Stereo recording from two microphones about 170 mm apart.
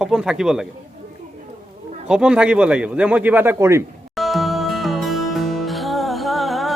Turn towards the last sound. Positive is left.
turn(degrees=0)  # may be behind; listen again after turning